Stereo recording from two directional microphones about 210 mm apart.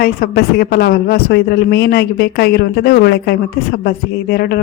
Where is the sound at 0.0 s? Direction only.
45° left (ahead or behind).